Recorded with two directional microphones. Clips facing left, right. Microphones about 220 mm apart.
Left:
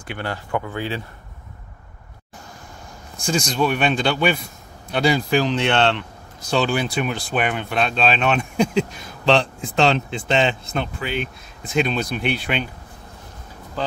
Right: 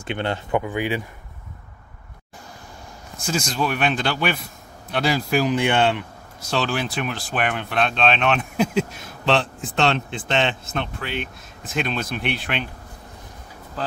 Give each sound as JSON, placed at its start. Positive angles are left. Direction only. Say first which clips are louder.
{"t": 0.0, "sound": "speech", "louder": "right 3 dB", "side_deg": -25}
{"t": 3.3, "sound": "speech", "louder": "left 3 dB", "side_deg": -5}
{"t": 13.8, "sound": "speech", "louder": "left 3 dB", "side_deg": 0}